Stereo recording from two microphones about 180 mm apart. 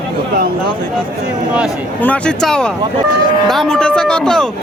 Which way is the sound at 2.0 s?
5° left (ahead or behind).